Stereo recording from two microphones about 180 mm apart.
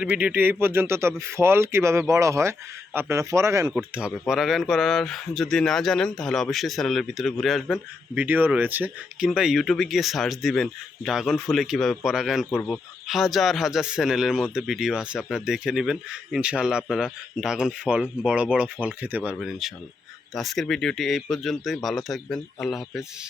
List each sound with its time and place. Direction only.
0.0 s speech: 5° right (ahead or behind)
3.8 s speech: 5° right (ahead or behind)